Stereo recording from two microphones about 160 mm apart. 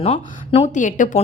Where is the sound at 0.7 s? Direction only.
50° left (ahead or behind).